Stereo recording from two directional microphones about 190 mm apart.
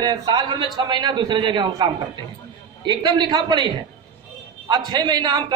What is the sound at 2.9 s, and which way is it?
A woman's voice, 25° right (ahead or behind).